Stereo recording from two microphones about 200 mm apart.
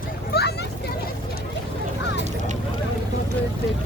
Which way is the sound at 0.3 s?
50° left (ahead or behind).